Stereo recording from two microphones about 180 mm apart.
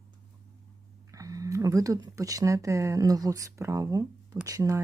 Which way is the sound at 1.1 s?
20° right (ahead or behind).